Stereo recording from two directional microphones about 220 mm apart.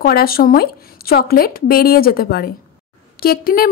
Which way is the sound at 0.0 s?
45° left (ahead or behind).